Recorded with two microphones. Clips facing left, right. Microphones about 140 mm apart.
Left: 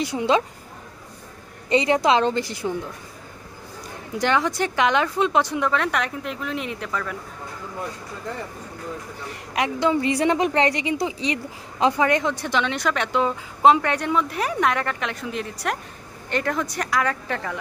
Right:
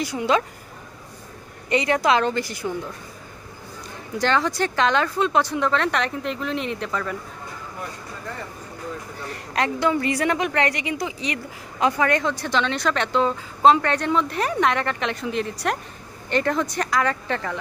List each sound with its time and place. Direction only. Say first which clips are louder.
0.0 s a woman's voice: left 1 dB; 25° left (ahead or behind)
1.7 s a woman's voice: left 1 dB; 25° left (ahead or behind)
4.2 s speech: even; 15° left (ahead or behind)
9.3 s a woman's voice: right 1 dB; 15° left (ahead or behind)